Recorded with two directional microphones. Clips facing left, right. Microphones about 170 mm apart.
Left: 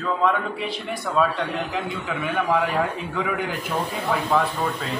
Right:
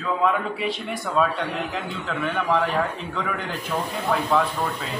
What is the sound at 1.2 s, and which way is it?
A man's voice, centre (ahead or behind).